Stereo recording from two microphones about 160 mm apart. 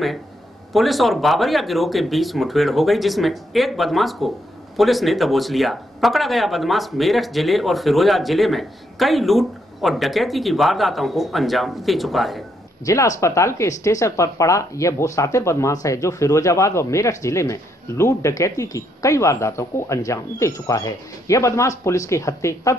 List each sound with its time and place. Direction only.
0.7 s speech: centre (ahead or behind)
12.8 s speech: 20° left (ahead or behind)